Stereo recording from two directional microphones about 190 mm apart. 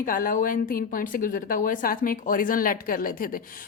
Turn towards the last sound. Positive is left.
turn(degrees=50)  # may be behind; listen again after turning